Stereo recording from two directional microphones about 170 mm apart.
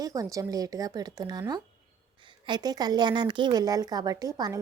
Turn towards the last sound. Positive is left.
turn(degrees=-25)  # may be behind; listen again after turning